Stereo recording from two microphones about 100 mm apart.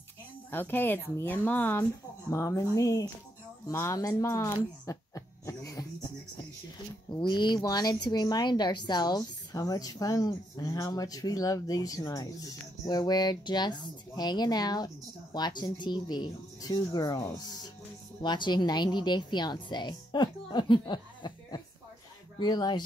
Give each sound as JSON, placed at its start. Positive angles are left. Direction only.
{"t": 0.5, "sound": "speech", "side_deg": 20}
{"t": 2.2, "sound": "speech", "side_deg": 30}
{"t": 3.6, "sound": "a sound", "side_deg": 35}
{"t": 7.2, "sound": "speech", "side_deg": 50}